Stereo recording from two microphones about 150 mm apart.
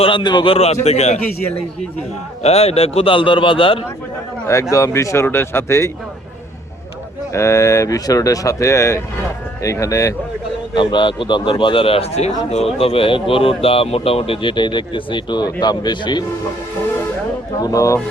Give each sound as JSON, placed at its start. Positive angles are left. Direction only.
{"t": 0.0, "sound": "speech", "side_deg": 30}
{"t": 2.4, "sound": "speech", "side_deg": 45}
{"t": 4.7, "sound": "speech", "side_deg": 20}
{"t": 7.3, "sound": "speech", "side_deg": 20}
{"t": 10.8, "sound": "speech", "side_deg": 35}
{"t": 17.6, "sound": "speech", "side_deg": 20}